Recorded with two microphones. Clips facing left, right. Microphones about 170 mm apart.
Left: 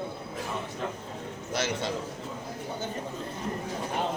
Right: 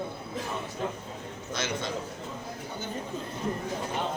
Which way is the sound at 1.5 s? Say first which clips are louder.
Left 3 dB; 35° left (ahead or behind).